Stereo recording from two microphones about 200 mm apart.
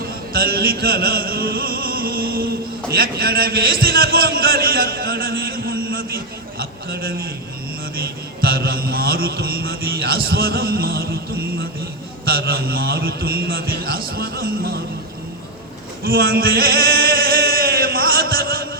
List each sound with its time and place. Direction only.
0.3 s mantra: 50° right (ahead or behind)
2.9 s a man's voice: 50° right (ahead or behind)
6.6 s mantra: 50° right (ahead or behind)
12.2 s mantra: 50° right (ahead or behind)
16.0 s male singing: 50° right (ahead or behind)